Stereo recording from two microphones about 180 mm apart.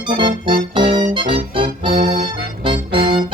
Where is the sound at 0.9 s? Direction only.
30° right (ahead or behind).